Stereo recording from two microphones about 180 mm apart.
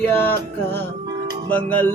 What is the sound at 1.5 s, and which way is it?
Speech, 10° left (ahead or behind).